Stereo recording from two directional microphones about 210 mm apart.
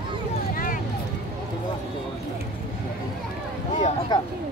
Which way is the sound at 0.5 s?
40° left (ahead or behind).